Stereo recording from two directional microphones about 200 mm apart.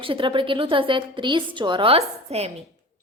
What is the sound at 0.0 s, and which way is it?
A woman's voice, 25° right (ahead or behind).